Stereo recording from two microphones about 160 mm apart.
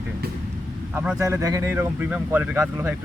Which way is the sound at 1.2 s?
20° right (ahead or behind).